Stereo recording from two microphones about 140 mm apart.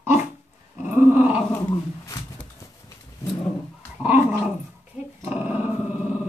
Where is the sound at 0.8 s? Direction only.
15° right (ahead or behind).